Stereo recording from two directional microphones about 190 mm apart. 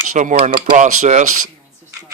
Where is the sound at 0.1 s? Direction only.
40° right (ahead or behind).